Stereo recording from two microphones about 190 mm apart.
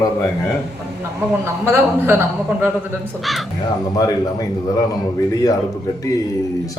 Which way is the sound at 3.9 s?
20° left (ahead or behind).